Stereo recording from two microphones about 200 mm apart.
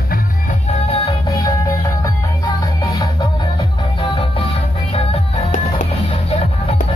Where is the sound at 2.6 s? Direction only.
20° left (ahead or behind).